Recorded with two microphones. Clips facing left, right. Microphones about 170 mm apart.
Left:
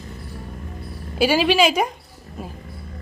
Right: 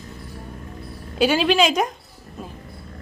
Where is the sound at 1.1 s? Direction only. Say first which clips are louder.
Even; 5° left (ahead or behind).